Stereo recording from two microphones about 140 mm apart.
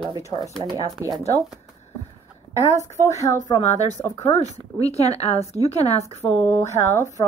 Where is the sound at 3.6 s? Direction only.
55° left (ahead or behind).